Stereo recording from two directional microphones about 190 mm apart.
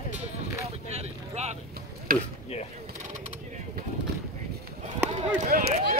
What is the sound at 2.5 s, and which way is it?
Speech, 35° left (ahead or behind).